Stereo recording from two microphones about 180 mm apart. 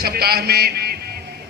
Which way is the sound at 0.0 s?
60° right (ahead or behind).